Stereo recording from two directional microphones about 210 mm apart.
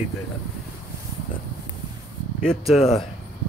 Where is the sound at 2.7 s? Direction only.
30° left (ahead or behind).